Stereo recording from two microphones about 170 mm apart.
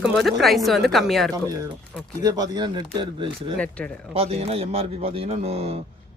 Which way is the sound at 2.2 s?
20° right (ahead or behind).